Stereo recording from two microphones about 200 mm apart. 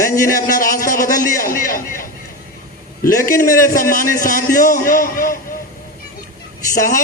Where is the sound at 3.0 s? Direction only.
45° left (ahead or behind).